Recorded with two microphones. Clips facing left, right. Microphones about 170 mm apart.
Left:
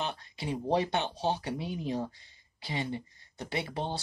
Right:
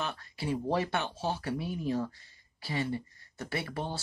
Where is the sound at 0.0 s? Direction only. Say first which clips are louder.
Even; 20° left (ahead or behind).